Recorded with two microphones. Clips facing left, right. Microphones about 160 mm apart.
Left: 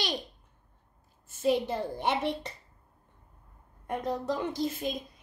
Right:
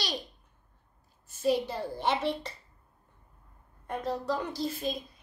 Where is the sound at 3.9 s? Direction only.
20° left (ahead or behind).